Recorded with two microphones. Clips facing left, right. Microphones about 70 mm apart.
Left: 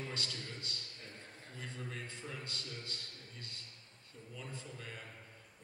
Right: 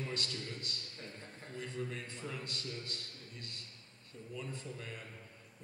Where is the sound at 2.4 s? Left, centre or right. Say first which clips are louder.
Right 3 dB; right.